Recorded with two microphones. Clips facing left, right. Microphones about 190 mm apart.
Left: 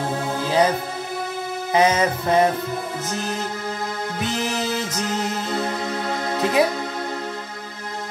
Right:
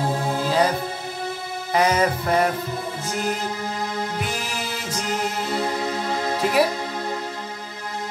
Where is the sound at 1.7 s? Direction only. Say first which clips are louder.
Left 1 dB; 20° left (ahead or behind).